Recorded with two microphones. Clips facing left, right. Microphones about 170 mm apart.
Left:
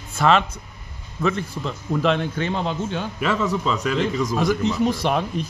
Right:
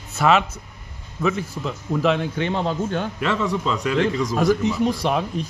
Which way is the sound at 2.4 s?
30° right (ahead or behind).